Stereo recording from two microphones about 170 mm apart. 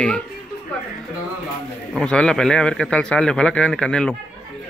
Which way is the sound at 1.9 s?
5° left (ahead or behind).